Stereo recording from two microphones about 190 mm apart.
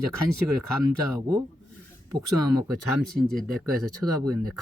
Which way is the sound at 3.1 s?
Centre (ahead or behind).